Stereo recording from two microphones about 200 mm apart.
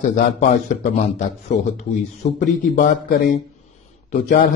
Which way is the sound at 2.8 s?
45° left (ahead or behind).